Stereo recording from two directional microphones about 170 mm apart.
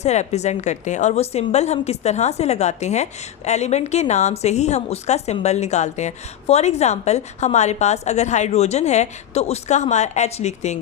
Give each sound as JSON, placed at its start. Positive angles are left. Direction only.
{"t": 0.0, "sound": "a woman's voice", "side_deg": 40}